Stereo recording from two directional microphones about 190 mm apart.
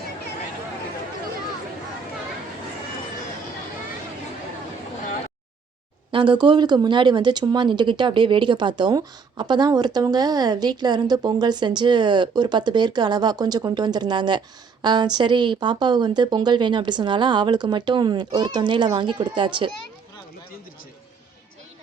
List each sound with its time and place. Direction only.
6.1 s speech: 25° right (ahead or behind)